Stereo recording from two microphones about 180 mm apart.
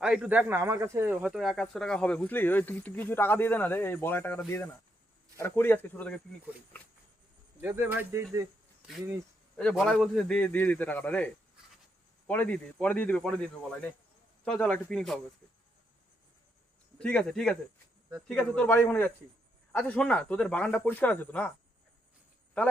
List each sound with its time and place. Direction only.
0.0 s speech: 5° right (ahead or behind)
7.6 s speech: 10° right (ahead or behind)
9.6 s speech: 5° left (ahead or behind)
12.3 s speech: 10° left (ahead or behind)
17.0 s speech: 5° left (ahead or behind)